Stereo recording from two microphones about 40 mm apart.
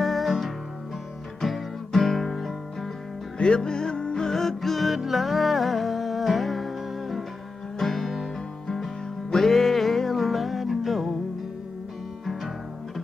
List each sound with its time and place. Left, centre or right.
0.0 s music: centre
3.3 s music: left; by 11.1 s centre